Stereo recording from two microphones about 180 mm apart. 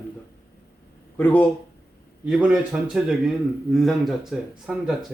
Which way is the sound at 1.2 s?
10° left (ahead or behind).